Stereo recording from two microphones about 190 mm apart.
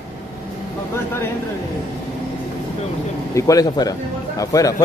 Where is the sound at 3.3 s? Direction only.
15° left (ahead or behind).